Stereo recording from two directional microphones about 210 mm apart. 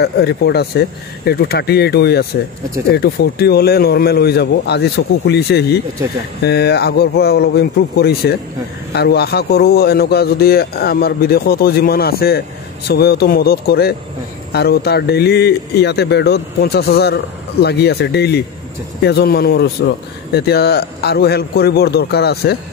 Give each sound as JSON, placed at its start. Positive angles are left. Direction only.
{"t": 0.0, "sound": "a man's voice", "side_deg": 50}